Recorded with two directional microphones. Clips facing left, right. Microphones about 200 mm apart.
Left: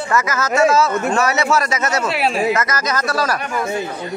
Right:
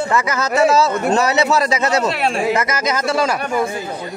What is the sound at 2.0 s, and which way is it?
Speech, 5° left (ahead or behind).